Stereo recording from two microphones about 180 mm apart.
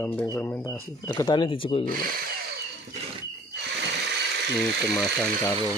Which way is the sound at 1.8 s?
55° right (ahead or behind).